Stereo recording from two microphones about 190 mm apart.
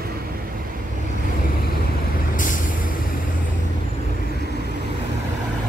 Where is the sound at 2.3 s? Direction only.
45° left (ahead or behind).